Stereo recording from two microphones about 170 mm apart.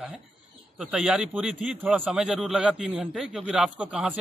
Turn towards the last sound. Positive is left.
turn(degrees=-5)  # may be behind; listen again after turning